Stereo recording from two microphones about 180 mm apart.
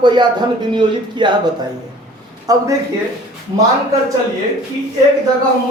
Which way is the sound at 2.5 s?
20° right (ahead or behind).